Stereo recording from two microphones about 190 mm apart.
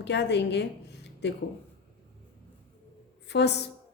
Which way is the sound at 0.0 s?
65° left (ahead or behind).